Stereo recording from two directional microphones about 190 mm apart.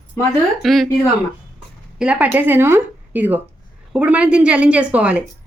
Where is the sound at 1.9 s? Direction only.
5° right (ahead or behind).